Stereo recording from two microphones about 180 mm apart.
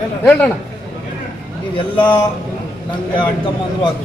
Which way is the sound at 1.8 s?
25° left (ahead or behind).